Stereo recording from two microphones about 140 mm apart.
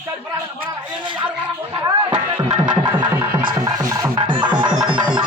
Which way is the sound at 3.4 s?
25° right (ahead or behind).